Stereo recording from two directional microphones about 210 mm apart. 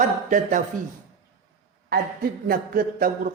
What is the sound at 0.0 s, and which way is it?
Speech, 35° right (ahead or behind).